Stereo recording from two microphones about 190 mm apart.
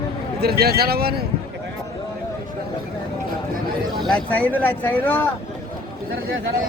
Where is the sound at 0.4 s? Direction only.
55° right (ahead or behind).